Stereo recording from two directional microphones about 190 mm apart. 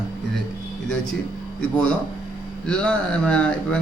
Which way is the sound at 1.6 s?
5° left (ahead or behind).